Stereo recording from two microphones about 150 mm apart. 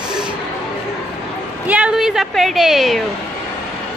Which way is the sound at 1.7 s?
5° right (ahead or behind).